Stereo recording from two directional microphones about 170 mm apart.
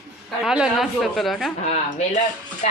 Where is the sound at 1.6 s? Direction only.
40° left (ahead or behind).